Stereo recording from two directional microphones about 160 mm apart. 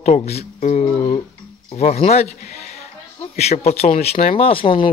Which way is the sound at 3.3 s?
40° left (ahead or behind).